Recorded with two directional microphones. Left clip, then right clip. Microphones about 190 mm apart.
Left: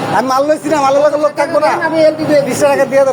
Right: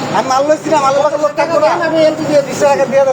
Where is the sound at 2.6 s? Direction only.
65° left (ahead or behind).